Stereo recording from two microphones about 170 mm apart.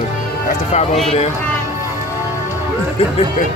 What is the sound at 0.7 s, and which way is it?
Speech, 40° left (ahead or behind).